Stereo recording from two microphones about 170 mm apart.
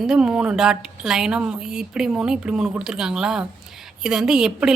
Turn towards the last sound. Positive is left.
turn(degrees=-5)  # may be behind; listen again after turning